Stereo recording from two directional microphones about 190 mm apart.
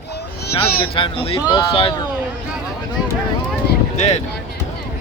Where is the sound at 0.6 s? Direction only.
30° left (ahead or behind).